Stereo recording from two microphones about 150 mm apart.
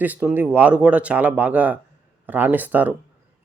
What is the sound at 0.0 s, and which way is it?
A man's voice, 10° right (ahead or behind).